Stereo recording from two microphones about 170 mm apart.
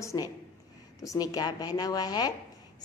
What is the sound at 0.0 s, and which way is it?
A man's voice, 20° left (ahead or behind).